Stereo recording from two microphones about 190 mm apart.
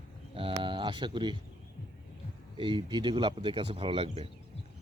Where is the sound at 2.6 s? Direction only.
25° right (ahead or behind).